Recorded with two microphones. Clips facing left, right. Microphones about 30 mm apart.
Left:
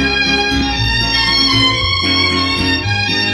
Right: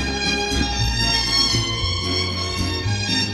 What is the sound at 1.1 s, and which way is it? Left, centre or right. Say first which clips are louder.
Music: left 8 dB; left.